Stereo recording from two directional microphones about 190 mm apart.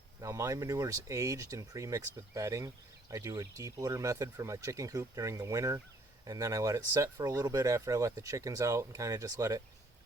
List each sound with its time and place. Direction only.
0.2 s speech: 15° right (ahead or behind)